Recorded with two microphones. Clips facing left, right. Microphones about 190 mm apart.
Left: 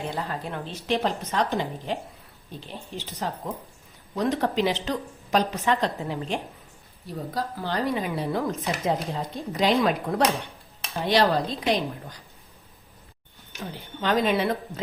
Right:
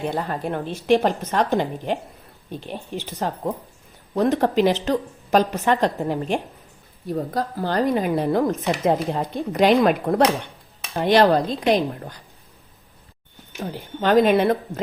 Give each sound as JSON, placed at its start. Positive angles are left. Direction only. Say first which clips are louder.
{"t": 0.1, "sound": "speech", "louder": "right 6 dB", "side_deg": -50}
{"t": 13.6, "sound": "speech", "louder": "right 6 dB", "side_deg": -50}